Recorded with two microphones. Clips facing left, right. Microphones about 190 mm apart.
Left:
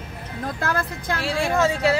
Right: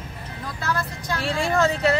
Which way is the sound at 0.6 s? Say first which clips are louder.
Even; 55° left (ahead or behind).